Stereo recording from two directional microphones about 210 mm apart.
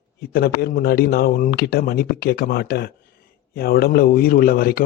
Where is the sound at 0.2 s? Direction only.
50° left (ahead or behind).